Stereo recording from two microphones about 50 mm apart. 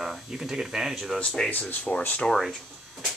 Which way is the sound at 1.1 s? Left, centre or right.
Centre.